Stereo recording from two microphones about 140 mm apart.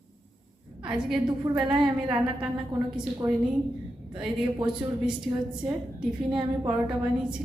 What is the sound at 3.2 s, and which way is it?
Speech, 25° right (ahead or behind).